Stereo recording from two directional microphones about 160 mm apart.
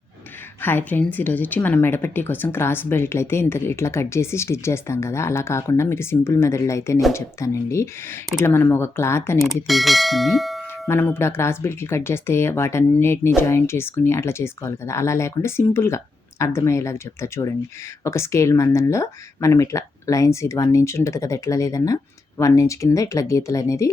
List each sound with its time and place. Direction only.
0.6 s speech: 10° left (ahead or behind)
9.4 s bell: centre (ahead or behind)
10.8 s speech: 15° left (ahead or behind)